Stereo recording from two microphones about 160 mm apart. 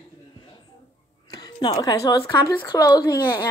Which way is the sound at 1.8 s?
20° left (ahead or behind).